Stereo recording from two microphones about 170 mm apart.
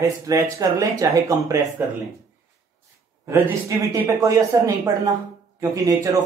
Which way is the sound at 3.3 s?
15° right (ahead or behind).